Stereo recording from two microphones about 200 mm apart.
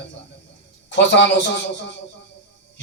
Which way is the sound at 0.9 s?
60° left (ahead or behind).